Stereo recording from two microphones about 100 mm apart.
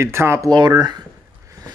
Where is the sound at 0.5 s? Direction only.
45° right (ahead or behind).